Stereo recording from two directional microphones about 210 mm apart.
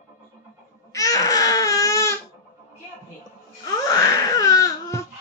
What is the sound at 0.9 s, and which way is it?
Baby cry, 15° left (ahead or behind).